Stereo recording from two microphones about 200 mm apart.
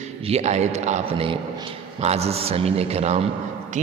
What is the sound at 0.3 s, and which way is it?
A man's voice, 35° right (ahead or behind).